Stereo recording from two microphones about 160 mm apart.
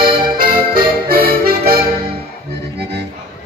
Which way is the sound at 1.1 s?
65° right (ahead or behind).